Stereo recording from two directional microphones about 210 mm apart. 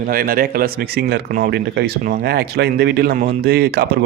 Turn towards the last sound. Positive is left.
turn(degrees=-50)  # may be behind; listen again after turning